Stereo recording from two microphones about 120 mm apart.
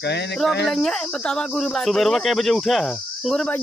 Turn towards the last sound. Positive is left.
turn(degrees=5)  # may be behind; listen again after turning